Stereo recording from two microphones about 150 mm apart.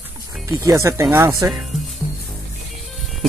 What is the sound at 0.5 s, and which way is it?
Speech, 20° right (ahead or behind).